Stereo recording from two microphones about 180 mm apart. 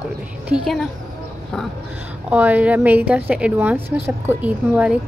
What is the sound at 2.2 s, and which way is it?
A woman's voice, 10° right (ahead or behind).